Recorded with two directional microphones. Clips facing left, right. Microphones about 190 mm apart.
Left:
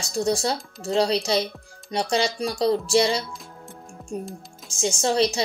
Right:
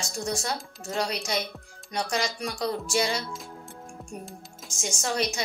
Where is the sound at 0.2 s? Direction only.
30° left (ahead or behind).